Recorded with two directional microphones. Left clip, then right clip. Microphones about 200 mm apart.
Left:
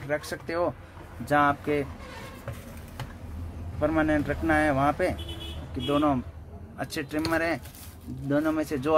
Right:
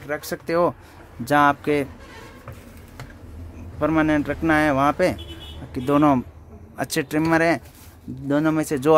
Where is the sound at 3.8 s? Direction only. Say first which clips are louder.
Right 5 dB; 40° right (ahead or behind).